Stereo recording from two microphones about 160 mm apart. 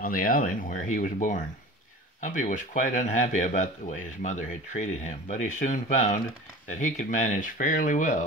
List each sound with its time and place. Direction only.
0.0 s speech: 60° left (ahead or behind)